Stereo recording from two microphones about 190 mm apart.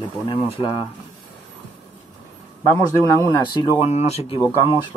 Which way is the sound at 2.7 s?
15° right (ahead or behind).